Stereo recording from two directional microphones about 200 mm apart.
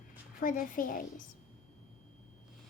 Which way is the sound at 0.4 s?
45° left (ahead or behind).